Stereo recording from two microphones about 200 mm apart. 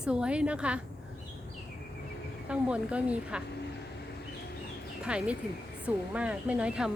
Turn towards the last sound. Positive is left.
turn(degrees=-5)  # may be behind; listen again after turning